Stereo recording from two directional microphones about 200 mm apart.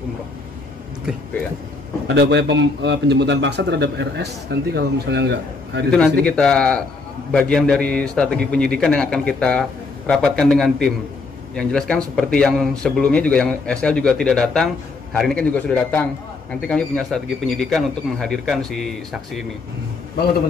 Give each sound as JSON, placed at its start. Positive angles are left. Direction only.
{"t": 2.1, "sound": "a man's voice", "side_deg": -60}
{"t": 5.9, "sound": "a man's voice", "side_deg": 5}